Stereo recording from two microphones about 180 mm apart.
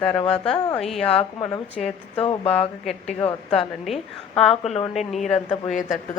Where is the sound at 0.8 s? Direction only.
Centre (ahead or behind).